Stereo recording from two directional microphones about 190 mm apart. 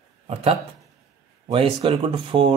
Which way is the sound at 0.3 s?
35° right (ahead or behind).